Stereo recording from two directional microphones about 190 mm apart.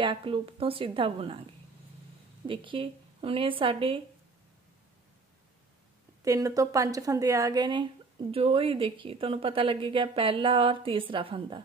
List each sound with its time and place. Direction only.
0.0 s speech: 25° right (ahead or behind)
6.2 s speech: 15° right (ahead or behind)